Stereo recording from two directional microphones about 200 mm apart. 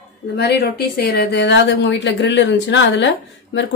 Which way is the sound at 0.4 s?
55° left (ahead or behind).